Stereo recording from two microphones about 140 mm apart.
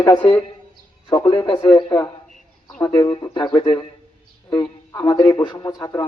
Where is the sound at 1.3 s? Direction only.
30° left (ahead or behind).